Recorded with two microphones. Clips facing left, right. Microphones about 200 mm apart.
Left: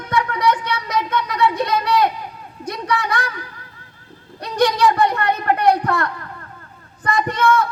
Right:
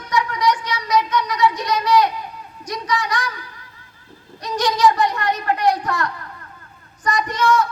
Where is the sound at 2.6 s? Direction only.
55° left (ahead or behind).